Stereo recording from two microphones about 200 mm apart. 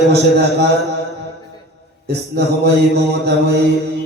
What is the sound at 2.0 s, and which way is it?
A man's voice, 55° right (ahead or behind).